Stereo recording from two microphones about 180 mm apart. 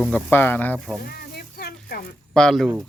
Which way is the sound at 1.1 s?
60° left (ahead or behind).